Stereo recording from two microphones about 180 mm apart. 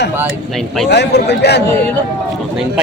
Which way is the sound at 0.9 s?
70° left (ahead or behind).